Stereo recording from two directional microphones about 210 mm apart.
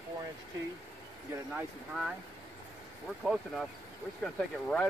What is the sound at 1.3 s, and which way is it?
Speech, 5° right (ahead or behind).